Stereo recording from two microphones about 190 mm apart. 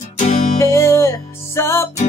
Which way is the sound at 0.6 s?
15° left (ahead or behind).